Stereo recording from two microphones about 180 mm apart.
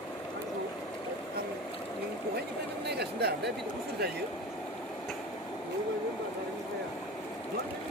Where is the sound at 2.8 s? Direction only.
65° right (ahead or behind).